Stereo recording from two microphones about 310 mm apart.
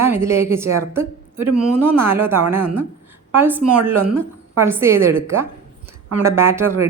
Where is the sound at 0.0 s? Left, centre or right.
Centre.